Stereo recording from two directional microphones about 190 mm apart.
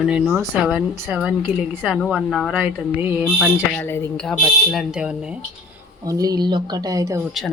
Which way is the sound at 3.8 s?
10° left (ahead or behind).